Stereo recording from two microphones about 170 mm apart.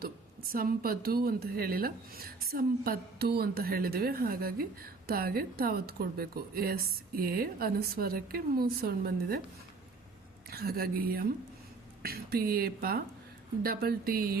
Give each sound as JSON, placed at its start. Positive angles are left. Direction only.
{"t": 0.0, "sound": "a woman's voice", "side_deg": -60}
{"t": 10.5, "sound": "a woman's voice", "side_deg": -65}